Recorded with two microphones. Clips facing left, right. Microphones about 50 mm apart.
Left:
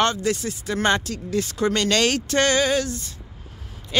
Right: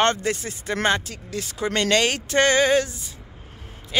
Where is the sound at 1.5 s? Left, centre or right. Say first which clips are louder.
Right 1 dB; centre.